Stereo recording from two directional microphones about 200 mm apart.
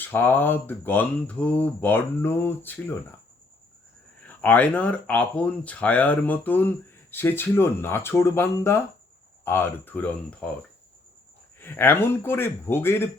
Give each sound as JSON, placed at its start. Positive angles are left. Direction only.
{"t": 0.0, "sound": "speech", "side_deg": 10}
{"t": 4.3, "sound": "speech", "side_deg": 10}
{"t": 11.6, "sound": "speech", "side_deg": 10}